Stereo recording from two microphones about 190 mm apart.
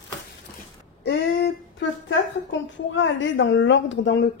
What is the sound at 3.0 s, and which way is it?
A woman's voice, 75° left (ahead or behind).